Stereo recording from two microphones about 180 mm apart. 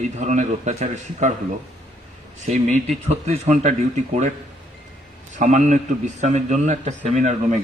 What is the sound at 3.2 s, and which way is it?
A man's voice, 40° right (ahead or behind).